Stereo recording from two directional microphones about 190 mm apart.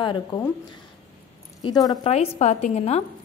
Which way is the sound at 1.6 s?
20° left (ahead or behind).